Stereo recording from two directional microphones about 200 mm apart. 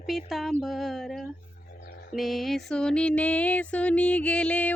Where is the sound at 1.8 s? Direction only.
50° left (ahead or behind).